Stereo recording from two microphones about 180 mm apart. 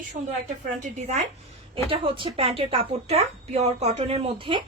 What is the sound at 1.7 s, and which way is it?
Speech, 30° right (ahead or behind).